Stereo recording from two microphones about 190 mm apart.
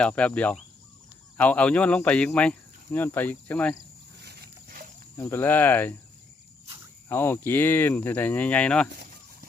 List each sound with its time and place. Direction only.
0.0 s speech: 5° left (ahead or behind)
4.2 s pig: 60° right (ahead or behind)
5.1 s speech: 10° left (ahead or behind)
7.1 s speech: 10° left (ahead or behind)